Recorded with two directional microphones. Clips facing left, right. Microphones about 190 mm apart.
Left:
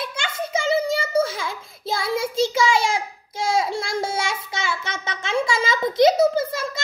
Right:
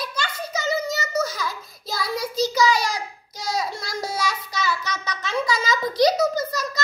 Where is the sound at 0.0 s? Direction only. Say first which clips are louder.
Left 2 dB; 25° left (ahead or behind).